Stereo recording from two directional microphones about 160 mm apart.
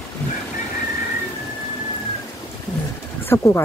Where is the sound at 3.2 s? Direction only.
15° left (ahead or behind).